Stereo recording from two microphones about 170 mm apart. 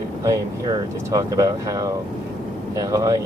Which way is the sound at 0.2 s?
20° right (ahead or behind).